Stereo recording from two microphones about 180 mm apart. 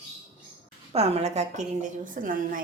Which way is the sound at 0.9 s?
35° right (ahead or behind).